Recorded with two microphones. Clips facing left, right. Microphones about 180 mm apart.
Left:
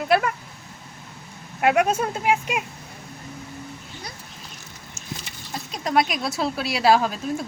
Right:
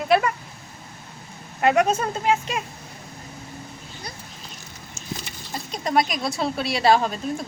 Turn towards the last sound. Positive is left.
turn(degrees=5)  # may be behind; listen again after turning